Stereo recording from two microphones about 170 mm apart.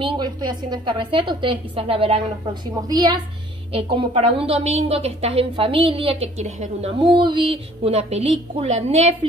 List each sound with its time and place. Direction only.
0.0 s a woman's voice: 25° right (ahead or behind)
3.7 s a woman's voice: 35° right (ahead or behind)